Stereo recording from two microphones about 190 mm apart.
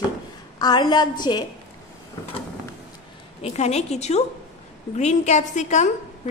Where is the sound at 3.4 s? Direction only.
35° left (ahead or behind).